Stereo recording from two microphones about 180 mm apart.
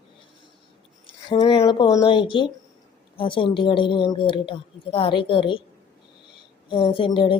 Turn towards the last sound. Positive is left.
turn(degrees=30)  # may be behind; listen again after turning